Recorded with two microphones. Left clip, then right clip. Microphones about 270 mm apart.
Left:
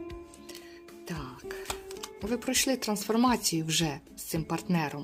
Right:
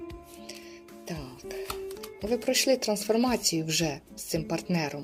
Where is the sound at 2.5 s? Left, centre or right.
Centre.